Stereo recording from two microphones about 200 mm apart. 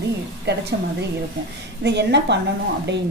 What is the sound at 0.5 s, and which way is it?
Speech, 55° right (ahead or behind).